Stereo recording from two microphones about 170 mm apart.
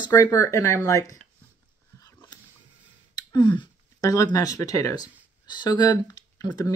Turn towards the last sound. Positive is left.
turn(degrees=20)  # may be behind; listen again after turning